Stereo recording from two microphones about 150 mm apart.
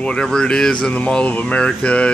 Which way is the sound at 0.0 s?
5° left (ahead or behind).